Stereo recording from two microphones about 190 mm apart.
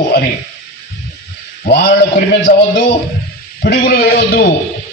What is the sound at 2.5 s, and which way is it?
A man's voice, 50° left (ahead or behind).